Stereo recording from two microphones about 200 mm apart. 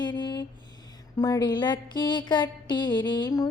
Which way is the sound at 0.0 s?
20° left (ahead or behind).